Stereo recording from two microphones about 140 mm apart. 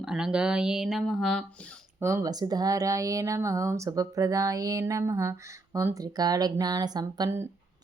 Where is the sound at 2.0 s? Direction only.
20° right (ahead or behind).